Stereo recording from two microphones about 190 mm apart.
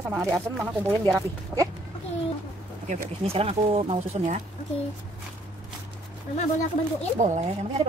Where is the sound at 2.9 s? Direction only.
30° right (ahead or behind).